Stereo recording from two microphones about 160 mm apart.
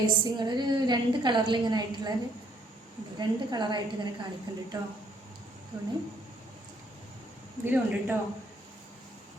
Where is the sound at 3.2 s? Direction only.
30° right (ahead or behind).